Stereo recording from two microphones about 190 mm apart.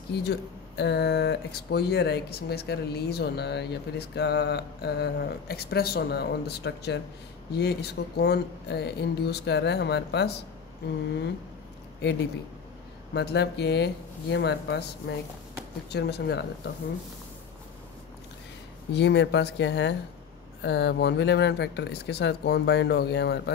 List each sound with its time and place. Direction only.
0.1 s speech: 60° left (ahead or behind)
13.1 s speech: 60° left (ahead or behind)
18.9 s speech: 65° left (ahead or behind)